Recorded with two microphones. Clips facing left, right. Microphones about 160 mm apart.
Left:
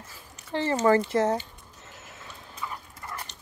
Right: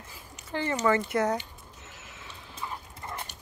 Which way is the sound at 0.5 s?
30° left (ahead or behind).